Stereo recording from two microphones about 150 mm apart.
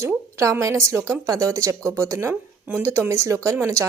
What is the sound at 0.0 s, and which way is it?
A woman's voice, 15° right (ahead or behind).